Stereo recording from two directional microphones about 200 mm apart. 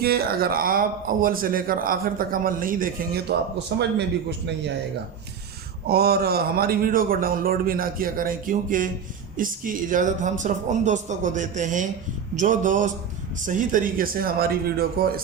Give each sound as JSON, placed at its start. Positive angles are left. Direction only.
{"t": 0.0, "sound": "a man's voice", "side_deg": -50}
{"t": 3.8, "sound": "a man's voice", "side_deg": -60}
{"t": 5.9, "sound": "a man's voice", "side_deg": -50}